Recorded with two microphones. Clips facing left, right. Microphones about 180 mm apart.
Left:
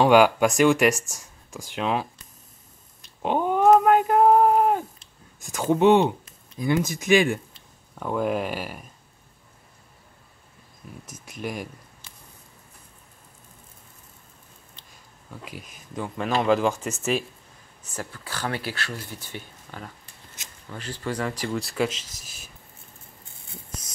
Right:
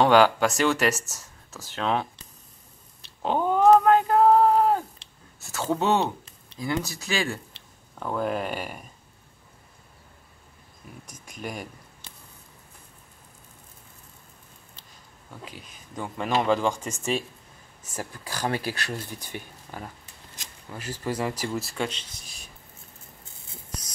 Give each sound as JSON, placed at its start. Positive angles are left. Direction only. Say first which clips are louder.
{"t": 0.0, "sound": "speech", "louder": "left 2 dB", "side_deg": 10}
{"t": 3.2, "sound": "a sound", "louder": "even", "side_deg": 15}
{"t": 5.4, "sound": "speech", "louder": "left 6 dB", "side_deg": 15}
{"t": 8.0, "sound": "speech", "louder": "left 2 dB", "side_deg": 5}
{"t": 11.1, "sound": "speech", "louder": "left 3 dB", "side_deg": 5}
{"t": 15.5, "sound": "speech", "louder": "left 5 dB", "side_deg": 0}
{"t": 17.8, "sound": "speech", "louder": "even", "side_deg": -15}